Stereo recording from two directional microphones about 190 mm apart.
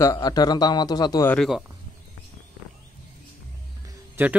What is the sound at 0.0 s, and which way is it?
Speech, 20° left (ahead or behind).